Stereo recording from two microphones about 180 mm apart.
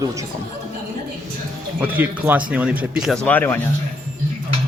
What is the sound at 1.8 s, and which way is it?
Speech, 10° right (ahead or behind).